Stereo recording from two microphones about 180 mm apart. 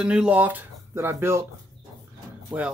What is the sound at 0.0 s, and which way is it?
Speech, 5° right (ahead or behind).